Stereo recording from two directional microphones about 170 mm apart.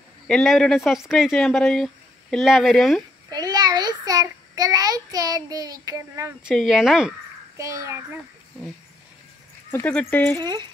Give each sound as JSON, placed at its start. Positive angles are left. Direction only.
{"t": 0.3, "sound": "speech", "side_deg": 5}
{"t": 3.3, "sound": "child singing", "side_deg": -25}
{"t": 6.4, "sound": "speech", "side_deg": 0}
{"t": 7.5, "sound": "a child's voice", "side_deg": -20}
{"t": 9.7, "sound": "speech", "side_deg": 10}
{"t": 10.4, "sound": "speech", "side_deg": -25}